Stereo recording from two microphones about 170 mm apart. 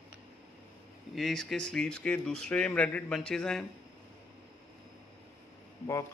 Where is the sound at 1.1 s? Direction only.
Centre (ahead or behind).